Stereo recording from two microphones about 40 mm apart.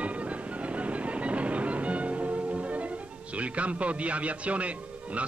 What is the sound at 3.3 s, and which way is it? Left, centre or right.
A man's voice, right.